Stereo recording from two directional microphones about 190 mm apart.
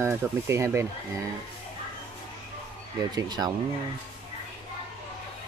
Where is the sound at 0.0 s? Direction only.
15° right (ahead or behind).